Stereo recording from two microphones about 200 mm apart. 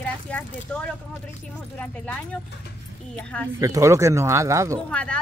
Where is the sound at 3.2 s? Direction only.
5° left (ahead or behind).